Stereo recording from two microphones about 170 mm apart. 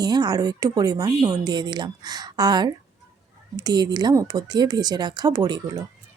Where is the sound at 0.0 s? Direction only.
25° right (ahead or behind).